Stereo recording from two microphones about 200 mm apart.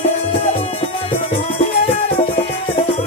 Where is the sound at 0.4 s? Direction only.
30° left (ahead or behind).